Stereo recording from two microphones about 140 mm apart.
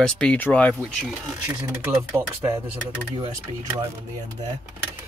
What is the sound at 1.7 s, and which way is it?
Speech, 10° right (ahead or behind).